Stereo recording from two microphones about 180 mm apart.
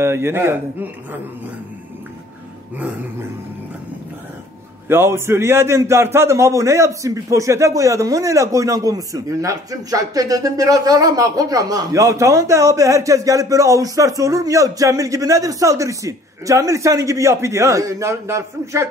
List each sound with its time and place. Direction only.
0.0 s a man's voice: 15° right (ahead or behind)
4.8 s a man's voice: 15° right (ahead or behind)